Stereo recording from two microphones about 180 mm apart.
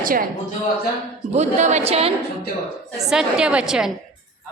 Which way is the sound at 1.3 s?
40° right (ahead or behind).